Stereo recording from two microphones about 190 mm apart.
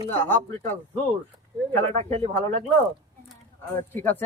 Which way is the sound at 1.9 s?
40° right (ahead or behind).